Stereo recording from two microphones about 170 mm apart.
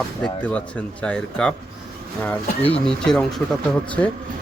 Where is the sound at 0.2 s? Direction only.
25° left (ahead or behind).